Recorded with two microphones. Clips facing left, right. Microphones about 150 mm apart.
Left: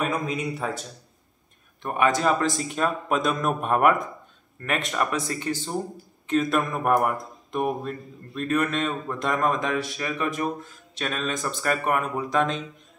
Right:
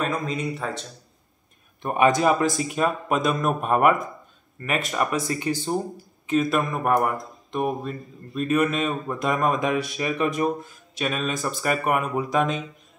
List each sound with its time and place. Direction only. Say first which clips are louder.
0.0 s speech: even; 10° left (ahead or behind)
1.8 s speech: right 3 dB; 20° right (ahead or behind)